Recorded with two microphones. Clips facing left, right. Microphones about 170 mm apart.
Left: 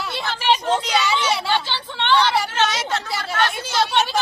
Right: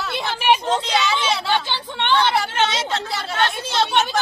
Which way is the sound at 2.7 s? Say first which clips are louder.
Even; 25° right (ahead or behind).